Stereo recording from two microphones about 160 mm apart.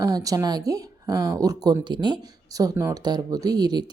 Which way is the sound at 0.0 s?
20° right (ahead or behind).